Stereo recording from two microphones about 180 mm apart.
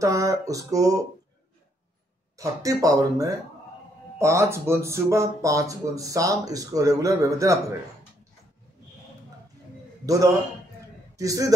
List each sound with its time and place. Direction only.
0.0 s speech: 20° right (ahead or behind)
2.3 s speech: 20° right (ahead or behind)
10.0 s speech: 20° right (ahead or behind)